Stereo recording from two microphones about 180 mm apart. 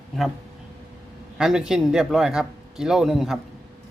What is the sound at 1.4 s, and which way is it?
A man's voice, 5° right (ahead or behind).